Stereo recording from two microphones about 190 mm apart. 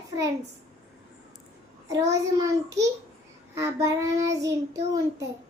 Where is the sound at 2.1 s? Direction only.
15° right (ahead or behind).